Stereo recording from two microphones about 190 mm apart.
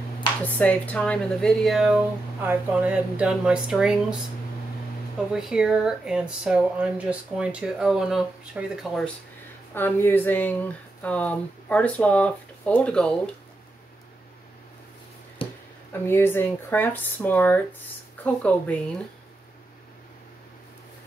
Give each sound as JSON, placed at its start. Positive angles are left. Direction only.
{"t": 0.4, "sound": "speech", "side_deg": 5}
{"t": 5.3, "sound": "speech", "side_deg": -5}
{"t": 9.8, "sound": "speech", "side_deg": 10}
{"t": 15.4, "sound": "a sound", "side_deg": 30}
{"t": 15.9, "sound": "speech", "side_deg": 10}